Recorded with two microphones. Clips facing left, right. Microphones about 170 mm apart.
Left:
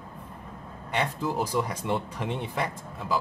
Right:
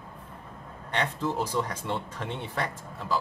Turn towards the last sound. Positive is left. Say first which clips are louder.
# left 1 dB
turn(degrees=10)  # may be behind; listen again after turning